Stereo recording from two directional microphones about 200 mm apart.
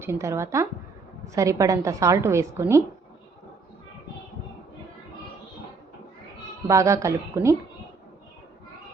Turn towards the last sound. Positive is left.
turn(degrees=-15)  # may be behind; listen again after turning